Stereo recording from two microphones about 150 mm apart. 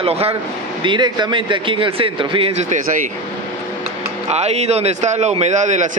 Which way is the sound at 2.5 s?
55° right (ahead or behind).